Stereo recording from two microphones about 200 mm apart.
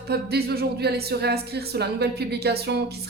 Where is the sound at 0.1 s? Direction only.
50° right (ahead or behind).